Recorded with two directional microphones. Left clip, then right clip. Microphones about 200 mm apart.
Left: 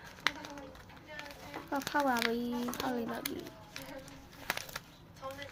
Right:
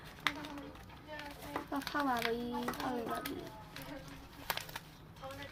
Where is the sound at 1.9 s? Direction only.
65° left (ahead or behind).